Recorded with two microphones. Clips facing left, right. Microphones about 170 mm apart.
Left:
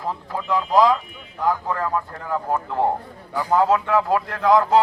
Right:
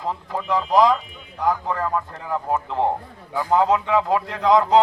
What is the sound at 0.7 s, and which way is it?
A man's voice, 15° right (ahead or behind).